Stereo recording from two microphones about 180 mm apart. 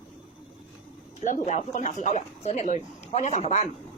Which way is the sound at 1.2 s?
40° left (ahead or behind).